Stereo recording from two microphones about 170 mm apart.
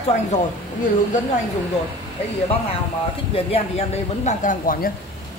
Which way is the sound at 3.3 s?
35° left (ahead or behind).